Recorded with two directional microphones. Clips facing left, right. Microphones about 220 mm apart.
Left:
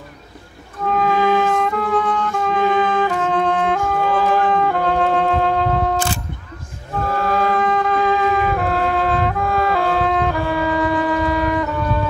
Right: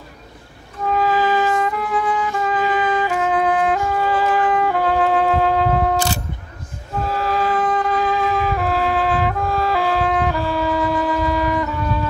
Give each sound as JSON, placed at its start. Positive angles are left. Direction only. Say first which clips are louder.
{"t": 0.8, "sound": "music", "louder": "left 1 dB", "side_deg": -5}
{"t": 7.2, "sound": "music", "louder": "left 2 dB", "side_deg": 55}
{"t": 7.4, "sound": "music", "louder": "left 1 dB", "side_deg": 0}
{"t": 10.4, "sound": "music", "louder": "left 1 dB", "side_deg": 55}
{"t": 10.7, "sound": "shofar", "louder": "left 2 dB", "side_deg": 0}